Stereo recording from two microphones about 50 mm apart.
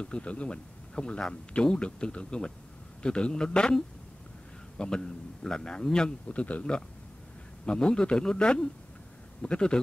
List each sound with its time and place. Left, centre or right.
0.0 s a man's voice: left